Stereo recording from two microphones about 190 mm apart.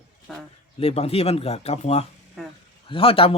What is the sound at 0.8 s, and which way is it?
Speech, 30° left (ahead or behind).